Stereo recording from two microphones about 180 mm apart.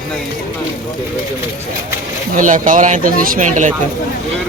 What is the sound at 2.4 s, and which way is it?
Speech, 45° right (ahead or behind).